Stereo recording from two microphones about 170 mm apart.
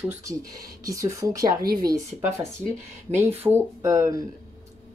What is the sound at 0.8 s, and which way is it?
Speech, 20° right (ahead or behind).